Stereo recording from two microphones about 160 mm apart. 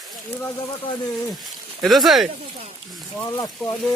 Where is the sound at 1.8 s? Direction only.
Centre (ahead or behind).